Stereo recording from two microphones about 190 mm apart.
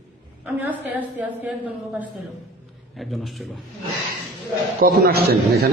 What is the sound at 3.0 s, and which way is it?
Speech, centre (ahead or behind).